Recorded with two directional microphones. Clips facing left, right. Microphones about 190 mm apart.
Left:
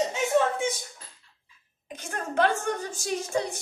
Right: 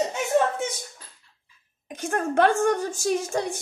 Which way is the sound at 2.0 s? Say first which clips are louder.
Right 5 dB; 55° right (ahead or behind).